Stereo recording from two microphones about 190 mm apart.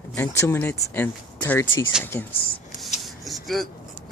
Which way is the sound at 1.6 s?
80° left.